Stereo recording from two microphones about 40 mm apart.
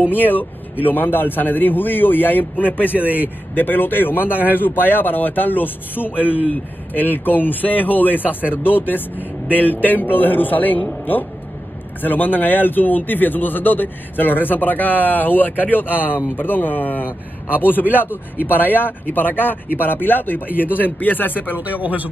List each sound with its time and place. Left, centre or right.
0.1 s speech: left
3.0 s speech: right
3.5 s speech: left
12.0 s speech: left
18.0 s speech: left
21.5 s speech: right